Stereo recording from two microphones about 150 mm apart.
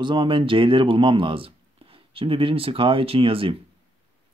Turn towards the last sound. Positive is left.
turn(degrees=-35)  # may be behind; listen again after turning